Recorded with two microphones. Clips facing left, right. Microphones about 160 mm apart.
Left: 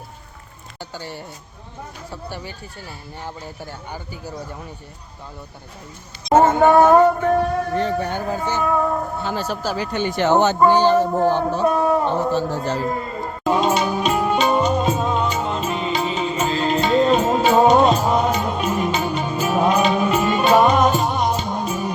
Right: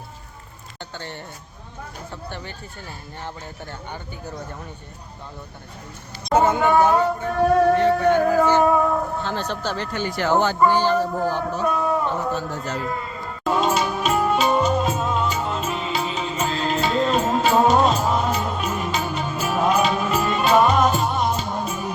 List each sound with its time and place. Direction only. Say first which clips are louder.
0.8 s speech: left 2 dB; 10° left (ahead or behind)
6.6 s speech: left 5 dB; 45° left (ahead or behind)
7.8 s music: right 5 dB; 35° left (ahead or behind)
8.7 s speech: right 1 dB; centre (ahead or behind)
9.9 s speech: left 4 dB; 20° left (ahead or behind)
13.4 s music: left 2 dB; centre (ahead or behind)